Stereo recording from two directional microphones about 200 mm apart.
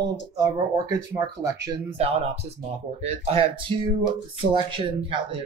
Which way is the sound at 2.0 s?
30° right (ahead or behind).